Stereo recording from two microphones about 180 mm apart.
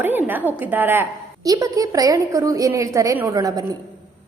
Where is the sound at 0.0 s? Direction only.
10° right (ahead or behind).